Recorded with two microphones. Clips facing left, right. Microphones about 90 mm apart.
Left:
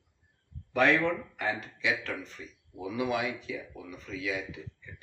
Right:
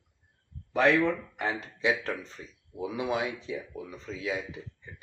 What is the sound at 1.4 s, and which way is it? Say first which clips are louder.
Speech: right 1 dB; 30° right (ahead or behind).